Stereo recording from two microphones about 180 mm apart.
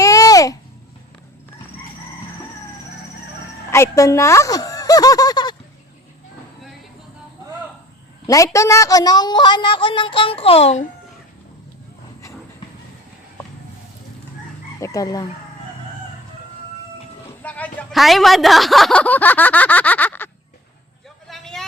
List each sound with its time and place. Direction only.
0.0 s a sound: 20° left (ahead or behind)
3.7 s speech: 15° left (ahead or behind)
8.5 s speech: 15° left (ahead or behind); by 10.8 s 35° left (ahead or behind)
14.8 s speech: 15° left (ahead or behind)
17.4 s a woman's voice: 10° left (ahead or behind)
21.2 s a sound: centre (ahead or behind)